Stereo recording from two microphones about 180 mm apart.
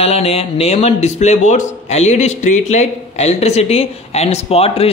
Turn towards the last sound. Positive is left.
turn(degrees=35)  # may be behind; listen again after turning